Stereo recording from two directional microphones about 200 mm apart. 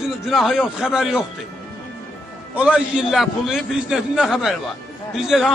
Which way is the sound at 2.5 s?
5° right (ahead or behind).